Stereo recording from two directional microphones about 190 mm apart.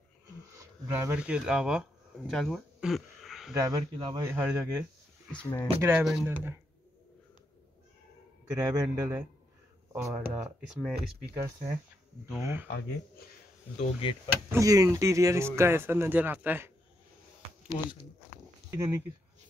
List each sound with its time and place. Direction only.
0.8 s speech: 15° right (ahead or behind)
3.5 s speech: 20° right (ahead or behind)
5.3 s speech: 10° left (ahead or behind)
5.8 s speech: 10° right (ahead or behind)
8.6 s speech: 15° right (ahead or behind)
11.3 s speech: 15° right (ahead or behind)
13.7 s speech: 25° left (ahead or behind)
14.5 s speech: 15° right (ahead or behind)
18.7 s speech: 15° right (ahead or behind)